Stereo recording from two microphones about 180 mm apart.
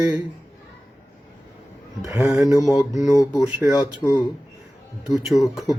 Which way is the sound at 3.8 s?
20° left (ahead or behind).